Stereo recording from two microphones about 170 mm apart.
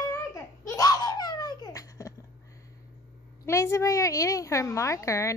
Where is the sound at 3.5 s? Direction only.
15° left (ahead or behind).